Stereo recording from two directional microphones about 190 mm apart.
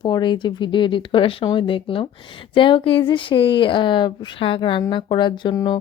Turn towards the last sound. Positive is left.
turn(degrees=20)  # may be behind; listen again after turning